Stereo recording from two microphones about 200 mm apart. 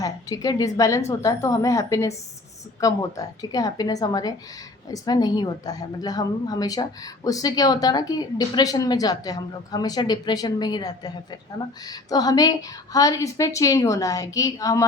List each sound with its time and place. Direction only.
0.0 s a woman's voice: 20° left (ahead or behind)